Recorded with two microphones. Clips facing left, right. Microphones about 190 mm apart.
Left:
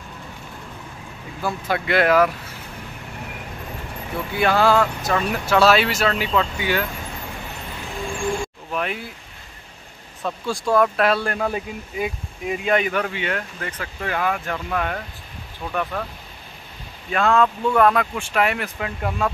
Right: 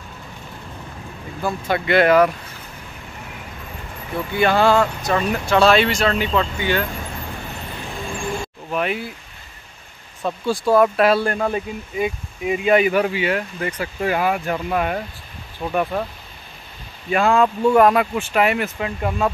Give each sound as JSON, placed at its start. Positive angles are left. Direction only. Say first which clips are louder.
{"t": 1.4, "sound": "speech", "louder": "right 2 dB", "side_deg": 0}
{"t": 4.4, "sound": "speech", "louder": "right 2 dB", "side_deg": 0}
{"t": 8.7, "sound": "speech", "louder": "right 4 dB", "side_deg": -5}
{"t": 10.2, "sound": "speech", "louder": "right 4 dB", "side_deg": -5}
{"t": 17.1, "sound": "speech", "louder": "right 2 dB", "side_deg": -10}